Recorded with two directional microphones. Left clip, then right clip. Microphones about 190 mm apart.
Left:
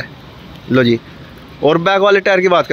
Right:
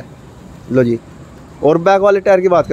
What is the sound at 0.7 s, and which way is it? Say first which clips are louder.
A man's voice: left 1 dB; 5° right (ahead or behind).